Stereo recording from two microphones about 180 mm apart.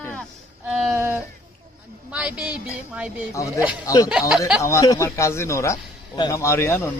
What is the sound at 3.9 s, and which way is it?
Speech, 20° left (ahead or behind).